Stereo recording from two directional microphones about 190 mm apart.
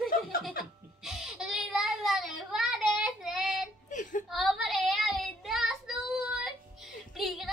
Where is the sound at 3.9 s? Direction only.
40° left (ahead or behind).